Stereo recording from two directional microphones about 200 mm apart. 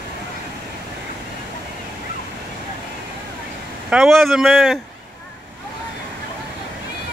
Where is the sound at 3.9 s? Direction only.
Centre (ahead or behind).